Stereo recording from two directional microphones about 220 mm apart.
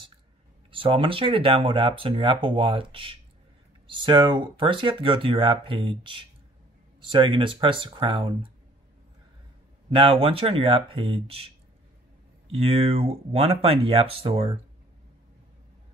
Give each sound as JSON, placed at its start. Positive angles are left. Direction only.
{"t": 0.7, "sound": "speech", "side_deg": -25}
{"t": 9.8, "sound": "speech", "side_deg": -25}